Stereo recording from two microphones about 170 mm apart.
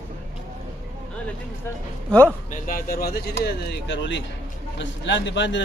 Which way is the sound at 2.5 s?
55° left (ahead or behind).